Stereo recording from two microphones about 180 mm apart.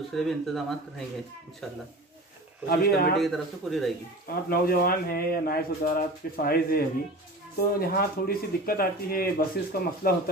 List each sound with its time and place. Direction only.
0.1 s speech: centre (ahead or behind)
2.7 s speech: 60° left (ahead or behind)
3.2 s speech: centre (ahead or behind)
4.3 s speech: 55° left (ahead or behind)